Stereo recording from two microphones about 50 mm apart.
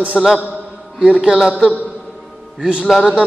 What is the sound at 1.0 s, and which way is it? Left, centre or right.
Speech, centre.